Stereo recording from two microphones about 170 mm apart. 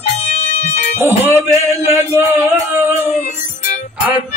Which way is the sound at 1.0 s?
15° right (ahead or behind).